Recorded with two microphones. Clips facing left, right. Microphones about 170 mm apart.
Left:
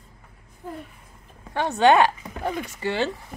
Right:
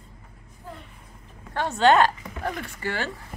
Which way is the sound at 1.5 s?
15° left (ahead or behind).